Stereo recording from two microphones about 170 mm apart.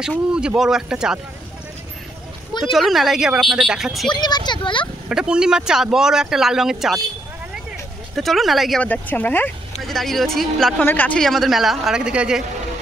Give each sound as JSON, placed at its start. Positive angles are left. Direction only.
{"t": 0.3, "sound": "speech", "side_deg": -5}
{"t": 2.7, "sound": "speech", "side_deg": 0}
{"t": 4.1, "sound": "speech", "side_deg": 25}
{"t": 5.1, "sound": "speech", "side_deg": -5}
{"t": 8.2, "sound": "speech", "side_deg": 0}
{"t": 8.8, "sound": "speech", "side_deg": 10}